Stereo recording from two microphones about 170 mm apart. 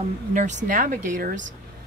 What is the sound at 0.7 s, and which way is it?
Speech, 50° right (ahead or behind).